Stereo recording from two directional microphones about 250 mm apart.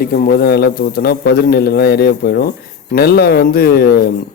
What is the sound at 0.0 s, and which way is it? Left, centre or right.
Speech, left.